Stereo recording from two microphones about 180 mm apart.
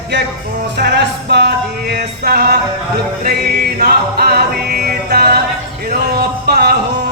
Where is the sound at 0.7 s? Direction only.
70° right (ahead or behind).